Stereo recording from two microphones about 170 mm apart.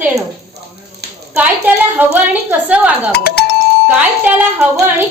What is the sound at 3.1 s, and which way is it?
Speech, 70° left (ahead or behind).